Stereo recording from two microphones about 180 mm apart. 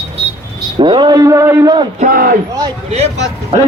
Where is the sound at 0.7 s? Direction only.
25° right (ahead or behind).